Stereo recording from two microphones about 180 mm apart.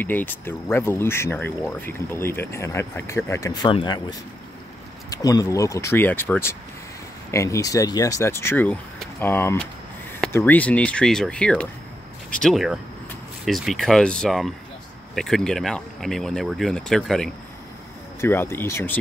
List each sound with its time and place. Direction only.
0.0 s speech: 10° left (ahead or behind)